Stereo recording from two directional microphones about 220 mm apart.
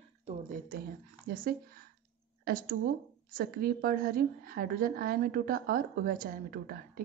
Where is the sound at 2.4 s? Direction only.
40° right (ahead or behind).